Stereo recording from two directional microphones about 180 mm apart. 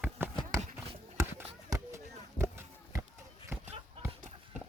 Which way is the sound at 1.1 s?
15° right (ahead or behind).